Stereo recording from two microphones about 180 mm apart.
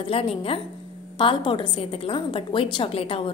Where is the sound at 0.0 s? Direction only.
30° left (ahead or behind).